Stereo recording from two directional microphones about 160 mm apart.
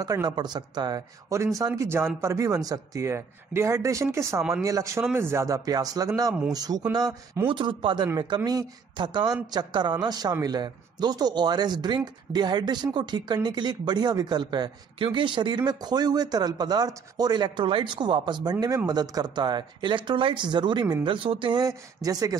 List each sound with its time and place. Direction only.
0.0 s speech: 25° right (ahead or behind)